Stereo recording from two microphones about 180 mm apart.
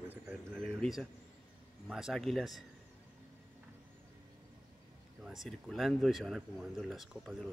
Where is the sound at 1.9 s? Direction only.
Centre (ahead or behind).